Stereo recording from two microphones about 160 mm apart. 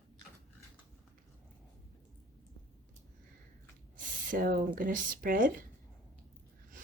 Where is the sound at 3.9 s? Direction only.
60° right (ahead or behind).